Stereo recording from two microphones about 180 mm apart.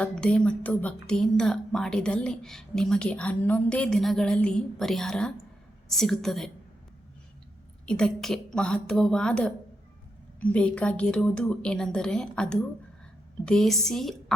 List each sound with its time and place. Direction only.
0.0 s a woman's voice: 5° left (ahead or behind)
7.9 s a woman's voice: 5° left (ahead or behind)